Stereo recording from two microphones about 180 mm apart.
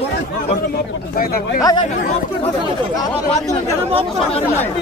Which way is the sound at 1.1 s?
55° left (ahead or behind).